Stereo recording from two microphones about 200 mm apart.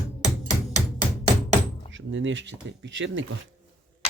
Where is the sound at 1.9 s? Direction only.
70° right (ahead or behind).